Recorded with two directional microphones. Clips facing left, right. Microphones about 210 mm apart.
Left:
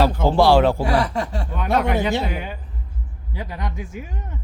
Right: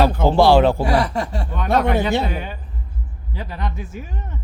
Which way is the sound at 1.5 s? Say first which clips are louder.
Right 2 dB; 10° left (ahead or behind).